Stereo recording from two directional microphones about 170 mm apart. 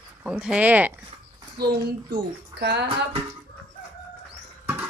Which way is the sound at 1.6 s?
65° right (ahead or behind).